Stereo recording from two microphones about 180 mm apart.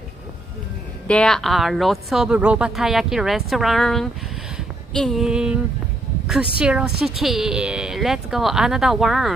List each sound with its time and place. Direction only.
1.0 s a woman's voice: 5° left (ahead or behind)
6.6 s a woman's voice: 5° right (ahead or behind)